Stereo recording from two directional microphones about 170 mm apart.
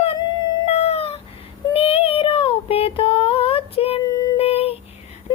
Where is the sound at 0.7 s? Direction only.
35° left (ahead or behind).